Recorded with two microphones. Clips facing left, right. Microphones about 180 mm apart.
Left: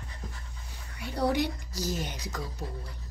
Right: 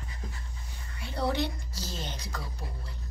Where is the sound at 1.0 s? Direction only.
15° left (ahead or behind).